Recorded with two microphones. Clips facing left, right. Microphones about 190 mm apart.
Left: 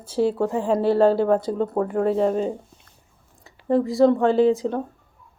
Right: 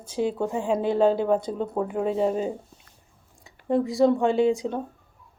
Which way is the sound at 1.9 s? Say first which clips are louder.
Left 3 dB; 5° right (ahead or behind).